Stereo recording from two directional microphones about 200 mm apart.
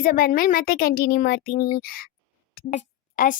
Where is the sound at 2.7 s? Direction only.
40° left (ahead or behind).